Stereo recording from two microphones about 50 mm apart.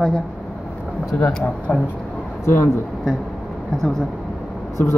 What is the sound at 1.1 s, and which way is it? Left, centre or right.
Speech, left.